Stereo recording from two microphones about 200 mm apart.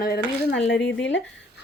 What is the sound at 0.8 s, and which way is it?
Speech, 65° left (ahead or behind).